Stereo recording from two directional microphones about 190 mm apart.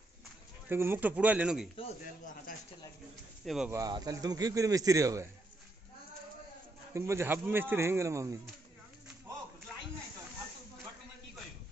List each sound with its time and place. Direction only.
0.7 s speech: 10° right (ahead or behind)
3.4 s speech: centre (ahead or behind)
3.7 s a man's voice: 20° right (ahead or behind)
6.9 s speech: 15° right (ahead or behind)